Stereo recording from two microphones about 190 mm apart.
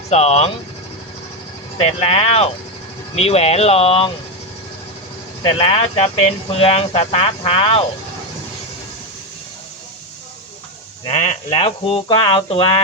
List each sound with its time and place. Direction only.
0.1 s speech: 35° left (ahead or behind)
1.8 s speech: 30° left (ahead or behind)
5.4 s speech: 30° left (ahead or behind)
11.1 s speech: 35° left (ahead or behind)